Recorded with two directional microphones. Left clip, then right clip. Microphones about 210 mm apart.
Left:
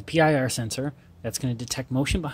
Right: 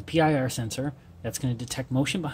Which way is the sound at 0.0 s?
25° left (ahead or behind).